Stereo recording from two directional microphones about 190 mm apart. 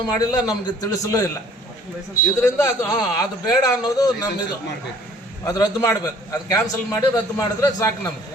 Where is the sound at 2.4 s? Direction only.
15° left (ahead or behind).